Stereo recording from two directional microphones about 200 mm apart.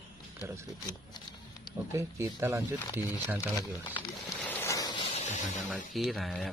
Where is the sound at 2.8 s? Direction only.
20° left (ahead or behind).